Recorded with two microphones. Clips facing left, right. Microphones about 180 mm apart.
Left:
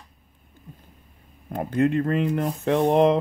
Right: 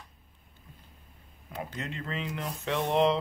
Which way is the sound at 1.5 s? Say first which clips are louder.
Left 16 dB; 55° left (ahead or behind).